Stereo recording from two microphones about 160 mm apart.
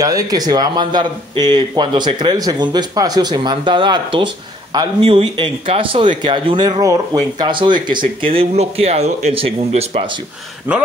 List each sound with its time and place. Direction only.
0.0 s speech: 25° right (ahead or behind)
10.7 s speech: 10° right (ahead or behind)